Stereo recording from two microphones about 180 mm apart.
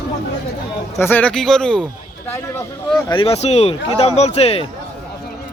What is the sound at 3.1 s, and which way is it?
Speech, 30° left (ahead or behind).